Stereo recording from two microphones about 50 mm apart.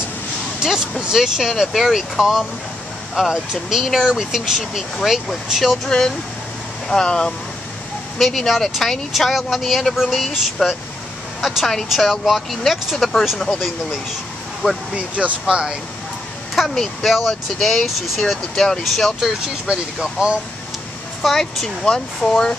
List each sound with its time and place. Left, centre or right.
0.6 s a sound: centre
1.1 s speech: centre
3.7 s speech: centre
5.9 s speech: centre
8.2 s speech: centre
11.4 s speech: centre
15.0 s speech: right
16.7 s speech: centre
19.4 s speech: centre
21.2 s speech: centre